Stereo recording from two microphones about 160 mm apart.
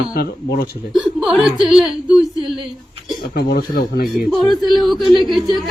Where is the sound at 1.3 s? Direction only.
Centre (ahead or behind).